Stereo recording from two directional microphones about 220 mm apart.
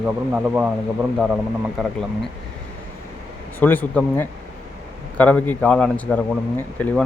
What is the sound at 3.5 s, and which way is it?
A man's voice, 10° left (ahead or behind).